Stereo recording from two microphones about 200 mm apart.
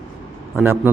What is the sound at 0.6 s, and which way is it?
Speech, 10° right (ahead or behind).